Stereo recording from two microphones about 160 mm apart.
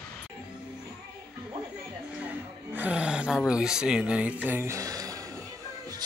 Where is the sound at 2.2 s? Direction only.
10° right (ahead or behind).